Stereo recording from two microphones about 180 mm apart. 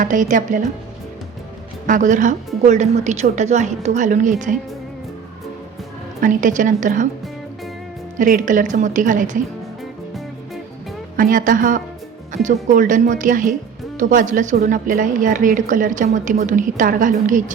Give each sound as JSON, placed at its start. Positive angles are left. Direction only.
{"t": 0.0, "sound": "a woman's voice", "side_deg": -45}
{"t": 1.9, "sound": "a woman's voice", "side_deg": -45}
{"t": 6.1, "sound": "a woman's voice", "side_deg": -45}
{"t": 8.2, "sound": "a woman's voice", "side_deg": -50}
{"t": 11.2, "sound": "a woman's voice", "side_deg": -50}